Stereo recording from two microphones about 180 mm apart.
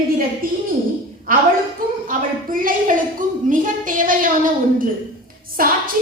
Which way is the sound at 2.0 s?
50° right (ahead or behind).